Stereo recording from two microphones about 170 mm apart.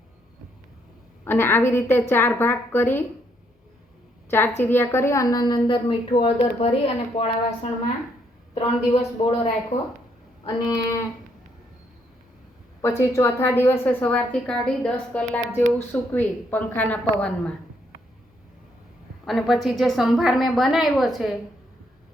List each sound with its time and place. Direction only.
1.2 s a woman's voice: 15° left (ahead or behind)
4.3 s a woman's voice: 15° left (ahead or behind)
12.8 s a woman's voice: 15° left (ahead or behind)
19.2 s a woman's voice: centre (ahead or behind)